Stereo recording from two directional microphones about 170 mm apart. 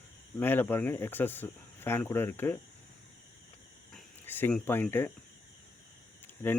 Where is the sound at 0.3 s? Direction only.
10° left (ahead or behind).